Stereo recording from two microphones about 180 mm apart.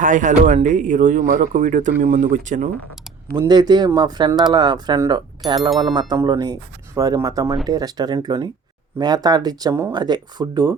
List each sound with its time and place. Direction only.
0.0 s speech: 45° right (ahead or behind)
3.3 s speech: 20° right (ahead or behind)